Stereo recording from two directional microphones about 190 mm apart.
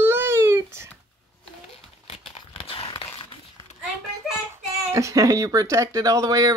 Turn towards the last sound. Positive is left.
turn(degrees=-15)  # may be behind; listen again after turning